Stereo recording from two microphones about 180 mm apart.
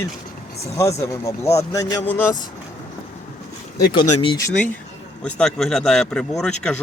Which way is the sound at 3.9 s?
25° left (ahead or behind).